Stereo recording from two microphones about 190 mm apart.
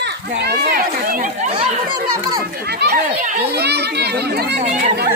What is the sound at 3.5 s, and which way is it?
Speech, 60° right (ahead or behind).